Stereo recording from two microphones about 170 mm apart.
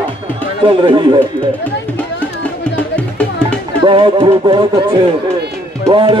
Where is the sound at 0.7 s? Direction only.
30° right (ahead or behind).